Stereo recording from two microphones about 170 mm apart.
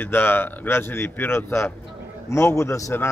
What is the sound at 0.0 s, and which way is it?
A man's voice, 10° left (ahead or behind).